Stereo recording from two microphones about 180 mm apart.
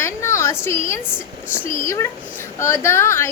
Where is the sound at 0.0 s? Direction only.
15° left (ahead or behind).